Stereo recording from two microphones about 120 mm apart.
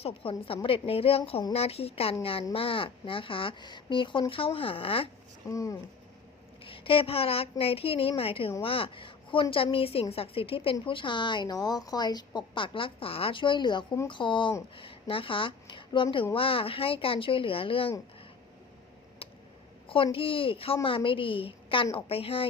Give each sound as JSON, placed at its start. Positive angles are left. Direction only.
{"t": 0.0, "sound": "a woman's voice", "side_deg": 50}
{"t": 5.5, "sound": "speech", "side_deg": 25}
{"t": 6.7, "sound": "a woman's voice", "side_deg": 50}
{"t": 19.9, "sound": "a woman's voice", "side_deg": 50}